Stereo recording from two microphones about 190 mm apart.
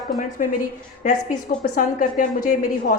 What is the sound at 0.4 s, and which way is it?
Speech, 45° left (ahead or behind).